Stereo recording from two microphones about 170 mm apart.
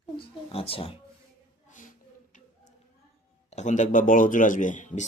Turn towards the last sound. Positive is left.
turn(degrees=50)  # may be behind; listen again after turning